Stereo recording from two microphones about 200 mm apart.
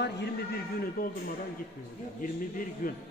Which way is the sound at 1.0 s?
45° left (ahead or behind).